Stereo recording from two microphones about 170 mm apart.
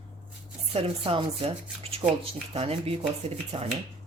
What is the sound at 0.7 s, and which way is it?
Speech, 30° right (ahead or behind).